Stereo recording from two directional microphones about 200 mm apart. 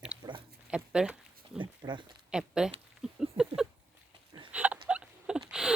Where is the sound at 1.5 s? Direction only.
25° right (ahead or behind).